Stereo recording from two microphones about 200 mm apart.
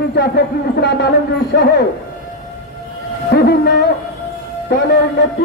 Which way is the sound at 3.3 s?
55° left (ahead or behind).